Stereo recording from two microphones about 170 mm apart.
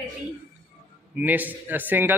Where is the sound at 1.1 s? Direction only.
10° right (ahead or behind).